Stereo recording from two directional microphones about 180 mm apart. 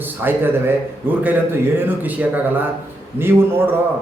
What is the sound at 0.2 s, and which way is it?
A man's voice, 10° right (ahead or behind).